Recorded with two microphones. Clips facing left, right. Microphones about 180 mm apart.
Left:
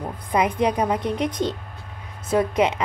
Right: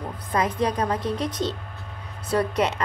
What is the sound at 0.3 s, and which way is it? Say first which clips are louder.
A woman's voice: left 3 dB; 15° left (ahead or behind).